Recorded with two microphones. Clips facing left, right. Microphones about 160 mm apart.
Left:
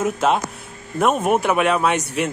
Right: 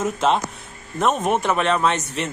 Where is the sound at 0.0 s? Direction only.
5° left (ahead or behind).